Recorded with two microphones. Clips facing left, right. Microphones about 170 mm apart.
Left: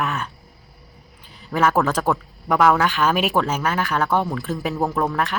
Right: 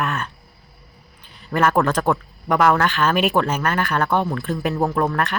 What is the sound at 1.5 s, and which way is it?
Speech, 5° left (ahead or behind).